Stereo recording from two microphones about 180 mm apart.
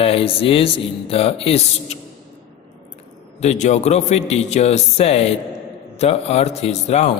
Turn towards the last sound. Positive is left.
turn(degrees=35)  # may be behind; listen again after turning